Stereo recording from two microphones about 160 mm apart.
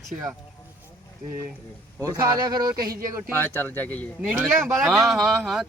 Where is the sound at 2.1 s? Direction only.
25° right (ahead or behind).